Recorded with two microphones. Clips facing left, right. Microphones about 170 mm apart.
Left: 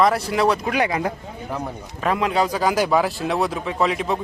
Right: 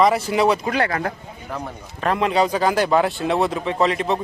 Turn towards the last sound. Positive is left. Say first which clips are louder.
# right 2 dB
turn(degrees=0)  # may be behind; listen again after turning